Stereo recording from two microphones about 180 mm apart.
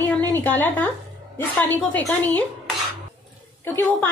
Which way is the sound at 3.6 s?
10° left (ahead or behind).